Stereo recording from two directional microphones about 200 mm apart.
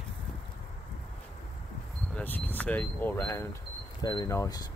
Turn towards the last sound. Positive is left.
turn(degrees=15)  # may be behind; listen again after turning